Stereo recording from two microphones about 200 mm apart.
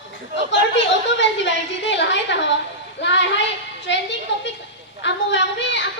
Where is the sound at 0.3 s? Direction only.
65° left (ahead or behind).